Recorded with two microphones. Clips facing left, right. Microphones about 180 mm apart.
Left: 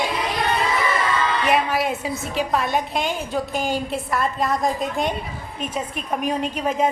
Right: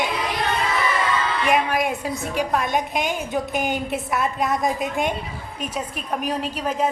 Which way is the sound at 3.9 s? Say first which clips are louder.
Even; centre (ahead or behind).